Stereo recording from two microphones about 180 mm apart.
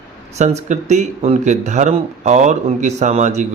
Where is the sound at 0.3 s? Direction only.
40° right (ahead or behind).